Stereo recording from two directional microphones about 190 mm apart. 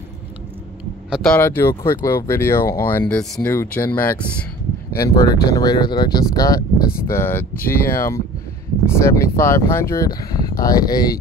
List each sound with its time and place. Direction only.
1.1 s speech: 5° left (ahead or behind)